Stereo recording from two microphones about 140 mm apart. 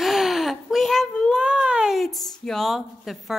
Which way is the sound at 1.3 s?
5° right (ahead or behind).